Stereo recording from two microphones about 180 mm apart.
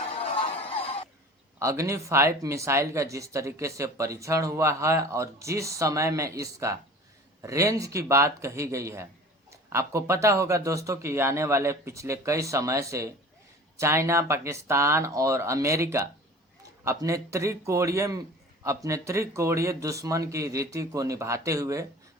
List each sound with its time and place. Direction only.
0.3 s music: 30° left (ahead or behind)
1.5 s speech: 15° right (ahead or behind)